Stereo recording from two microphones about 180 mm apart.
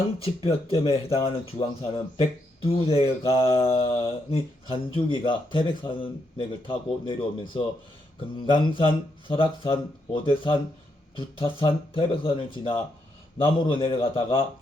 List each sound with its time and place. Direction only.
0.2 s speech: 35° left (ahead or behind)